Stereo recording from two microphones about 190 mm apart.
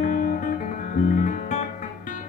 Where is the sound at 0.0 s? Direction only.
45° left (ahead or behind).